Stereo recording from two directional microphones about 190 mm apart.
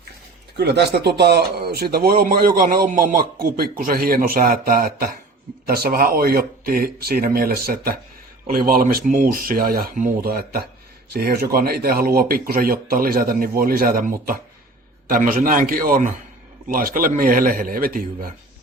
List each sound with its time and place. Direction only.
0.5 s speech: 60° right (ahead or behind)